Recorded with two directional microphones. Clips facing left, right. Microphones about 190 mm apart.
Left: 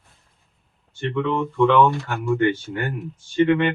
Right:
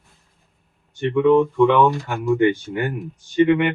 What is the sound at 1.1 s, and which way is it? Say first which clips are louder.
Speech: right 9 dB; 15° right (ahead or behind).